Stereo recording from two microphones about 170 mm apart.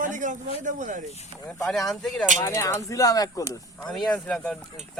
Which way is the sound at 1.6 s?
Centre (ahead or behind).